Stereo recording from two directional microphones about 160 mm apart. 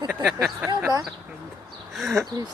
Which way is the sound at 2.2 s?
25° right (ahead or behind).